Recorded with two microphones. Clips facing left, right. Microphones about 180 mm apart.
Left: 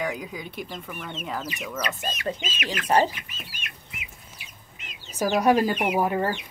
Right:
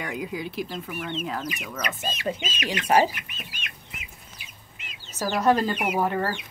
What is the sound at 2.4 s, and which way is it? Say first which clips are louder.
Speech: right 2 dB; 30° right (ahead or behind).